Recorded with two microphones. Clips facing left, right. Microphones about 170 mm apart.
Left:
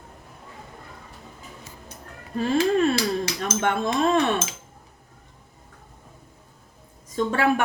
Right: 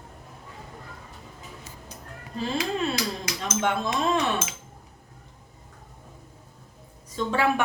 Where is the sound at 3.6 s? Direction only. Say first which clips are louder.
Left 3 dB; 50° left (ahead or behind).